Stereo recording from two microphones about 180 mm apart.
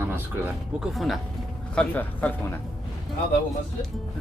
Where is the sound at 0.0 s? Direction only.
10° right (ahead or behind); by 2.6 s 10° left (ahead or behind).